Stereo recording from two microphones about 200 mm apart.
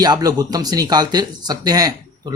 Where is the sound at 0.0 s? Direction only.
20° right (ahead or behind).